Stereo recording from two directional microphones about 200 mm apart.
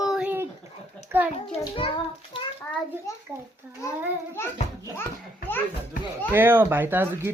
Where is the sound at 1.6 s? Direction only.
25° left (ahead or behind).